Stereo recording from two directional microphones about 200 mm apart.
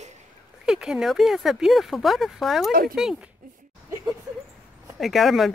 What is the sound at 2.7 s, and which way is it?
Speech, 45° right (ahead or behind).